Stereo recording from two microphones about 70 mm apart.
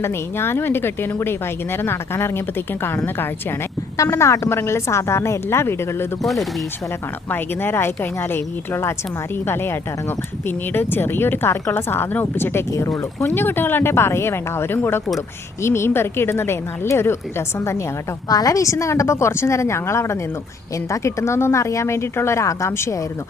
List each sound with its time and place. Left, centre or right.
0.0 s speech: left
3.9 s speech: left
6.2 s speech: centre
7.3 s speech: left
10.8 s speech: left
18.3 s a woman's voice: left